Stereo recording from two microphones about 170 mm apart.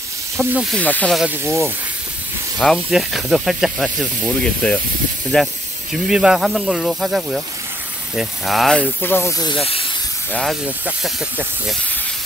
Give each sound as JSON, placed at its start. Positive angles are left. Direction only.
{"t": 0.4, "sound": "speech", "side_deg": 5}
{"t": 1.2, "sound": "speech", "side_deg": -15}
{"t": 2.6, "sound": "speech", "side_deg": 0}
{"t": 9.5, "sound": "speech", "side_deg": 35}
{"t": 10.3, "sound": "speech", "side_deg": 0}